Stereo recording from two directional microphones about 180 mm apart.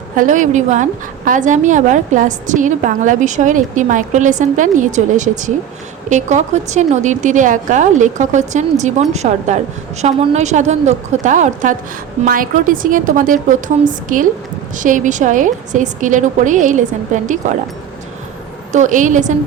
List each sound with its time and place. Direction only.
0.2 s a woman's voice: 45° right (ahead or behind)
18.7 s a woman's voice: 45° right (ahead or behind)